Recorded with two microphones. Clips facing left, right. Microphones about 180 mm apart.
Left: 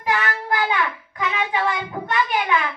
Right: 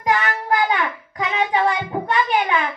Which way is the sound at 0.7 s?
35° right (ahead or behind).